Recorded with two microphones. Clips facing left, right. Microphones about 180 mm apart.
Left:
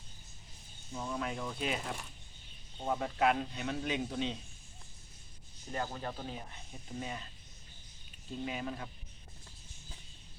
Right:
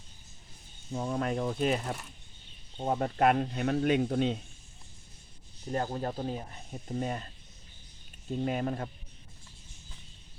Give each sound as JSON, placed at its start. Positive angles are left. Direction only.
{"t": 0.9, "sound": "speech", "side_deg": -45}
{"t": 2.8, "sound": "speech", "side_deg": -45}
{"t": 5.7, "sound": "speech", "side_deg": -40}
{"t": 8.4, "sound": "speech", "side_deg": -50}